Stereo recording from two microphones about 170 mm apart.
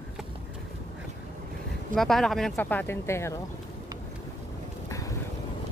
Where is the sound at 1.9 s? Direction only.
Centre (ahead or behind).